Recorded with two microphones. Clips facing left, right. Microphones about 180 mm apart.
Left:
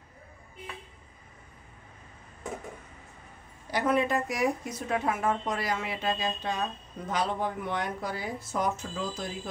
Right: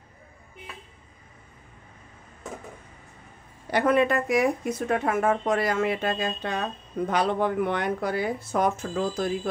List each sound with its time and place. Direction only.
3.7 s a woman's voice: 65° right (ahead or behind)